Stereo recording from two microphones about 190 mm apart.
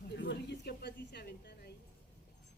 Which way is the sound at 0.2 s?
65° left (ahead or behind).